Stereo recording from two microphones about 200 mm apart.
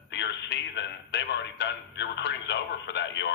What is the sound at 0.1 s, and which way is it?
A man's voice, 60° left (ahead or behind).